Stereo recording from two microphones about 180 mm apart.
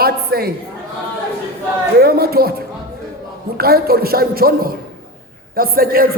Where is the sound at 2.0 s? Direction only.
60° right (ahead or behind).